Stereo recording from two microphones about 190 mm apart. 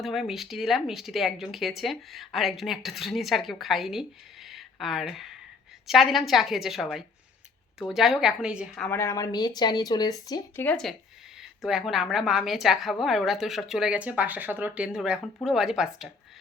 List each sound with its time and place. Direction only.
0.0 s speech: centre (ahead or behind)
4.4 s a sound: centre (ahead or behind)
5.9 s speech: centre (ahead or behind)
9.0 s speech: 15° left (ahead or behind); by 16.0 s 5° right (ahead or behind)